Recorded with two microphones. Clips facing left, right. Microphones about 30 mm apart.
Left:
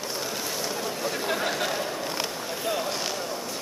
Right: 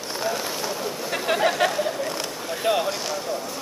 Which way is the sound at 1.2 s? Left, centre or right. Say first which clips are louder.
Right 9 dB; right.